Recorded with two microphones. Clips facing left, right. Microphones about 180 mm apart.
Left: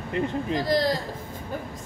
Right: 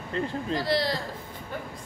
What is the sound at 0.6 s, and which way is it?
Speech, 45° left (ahead or behind).